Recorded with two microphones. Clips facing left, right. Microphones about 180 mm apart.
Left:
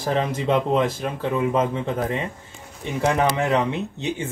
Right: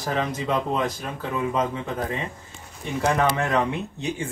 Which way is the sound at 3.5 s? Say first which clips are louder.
Left 2 dB; 20° left (ahead or behind).